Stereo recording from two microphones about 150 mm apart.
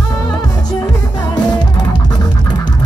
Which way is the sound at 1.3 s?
30° left (ahead or behind).